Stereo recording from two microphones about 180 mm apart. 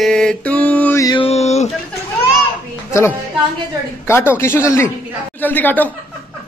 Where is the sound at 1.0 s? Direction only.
30° left (ahead or behind).